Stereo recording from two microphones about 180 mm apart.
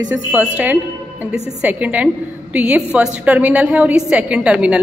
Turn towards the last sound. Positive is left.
turn(degrees=-5)  # may be behind; listen again after turning